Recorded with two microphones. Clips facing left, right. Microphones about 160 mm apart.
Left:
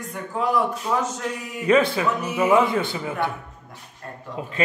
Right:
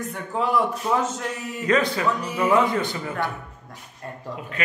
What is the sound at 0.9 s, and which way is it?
Speech, 5° right (ahead or behind).